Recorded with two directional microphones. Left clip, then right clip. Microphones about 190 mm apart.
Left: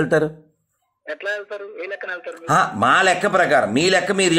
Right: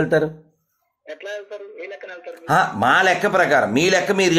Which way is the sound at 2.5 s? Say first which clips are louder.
Even; 15° left (ahead or behind).